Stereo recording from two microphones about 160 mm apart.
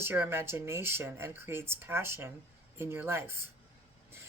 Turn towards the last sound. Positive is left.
turn(degrees=-15)  # may be behind; listen again after turning